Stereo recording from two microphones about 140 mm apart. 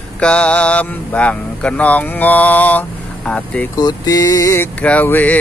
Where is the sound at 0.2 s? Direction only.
10° left (ahead or behind).